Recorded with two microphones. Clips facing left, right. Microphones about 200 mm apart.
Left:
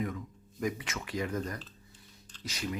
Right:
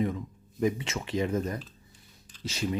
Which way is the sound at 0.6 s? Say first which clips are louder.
Right 6 dB; 25° right (ahead or behind).